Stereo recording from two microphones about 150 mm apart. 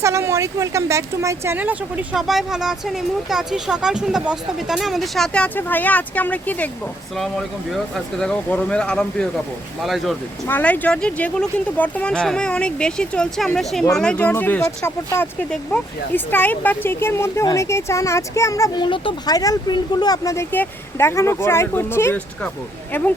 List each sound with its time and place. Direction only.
0.0 s speech: 20° right (ahead or behind); by 10.2 s centre (ahead or behind)
10.4 s speech: 10° left (ahead or behind)
18.9 s speech: 35° left (ahead or behind); by 23.1 s 10° left (ahead or behind)